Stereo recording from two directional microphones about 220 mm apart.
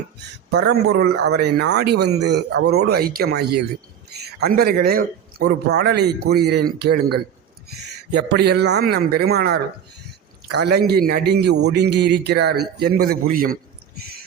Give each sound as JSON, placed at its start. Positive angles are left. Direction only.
{"t": 0.5, "sound": "a man's voice", "side_deg": -50}
{"t": 10.6, "sound": "a man's voice", "side_deg": -45}